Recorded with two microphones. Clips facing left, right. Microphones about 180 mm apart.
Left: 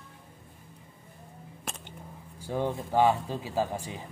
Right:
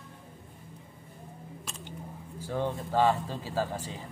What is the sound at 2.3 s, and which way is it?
Speech, 15° left (ahead or behind).